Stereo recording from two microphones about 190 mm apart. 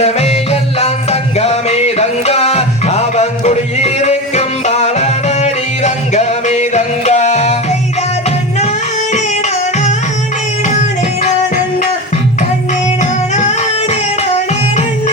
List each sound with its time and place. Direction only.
0.0 s music: 35° left (ahead or behind)
13.0 s music: 40° left (ahead or behind)